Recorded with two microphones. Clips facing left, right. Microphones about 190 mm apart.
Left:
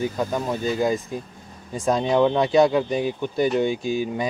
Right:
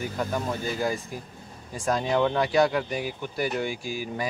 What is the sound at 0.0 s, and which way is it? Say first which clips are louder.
Speech: left 4 dB; 20° left (ahead or behind).